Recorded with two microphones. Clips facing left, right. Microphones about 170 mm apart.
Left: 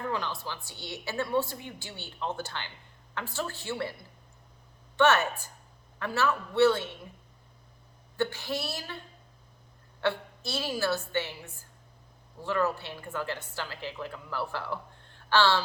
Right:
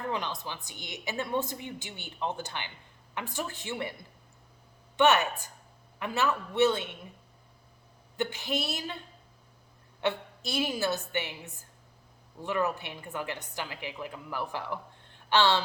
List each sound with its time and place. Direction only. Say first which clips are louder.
0.1 s a woman's voice: even; 20° right (ahead or behind)
4.9 s a woman's voice: even; 15° right (ahead or behind)
8.1 s a woman's voice: left 1 dB; 20° right (ahead or behind)
10.0 s a woman's voice: left 1 dB; 20° right (ahead or behind)